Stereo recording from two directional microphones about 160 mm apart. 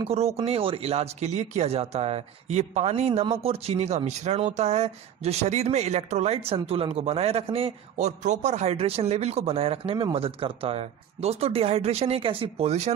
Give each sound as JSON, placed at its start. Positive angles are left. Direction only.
{"t": 0.0, "sound": "speech", "side_deg": -40}